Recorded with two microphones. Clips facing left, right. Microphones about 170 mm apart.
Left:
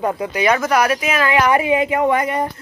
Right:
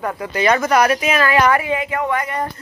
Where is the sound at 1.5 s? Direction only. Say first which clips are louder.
Left 3 dB; 20° left (ahead or behind).